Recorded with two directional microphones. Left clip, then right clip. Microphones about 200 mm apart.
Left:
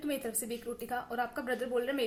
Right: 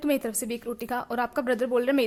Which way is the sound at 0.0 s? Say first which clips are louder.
Right 9 dB; 35° right (ahead or behind).